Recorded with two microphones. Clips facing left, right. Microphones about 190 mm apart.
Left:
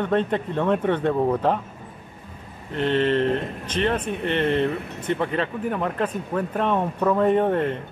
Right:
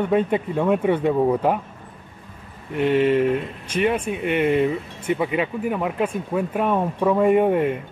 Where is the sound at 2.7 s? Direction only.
10° right (ahead or behind).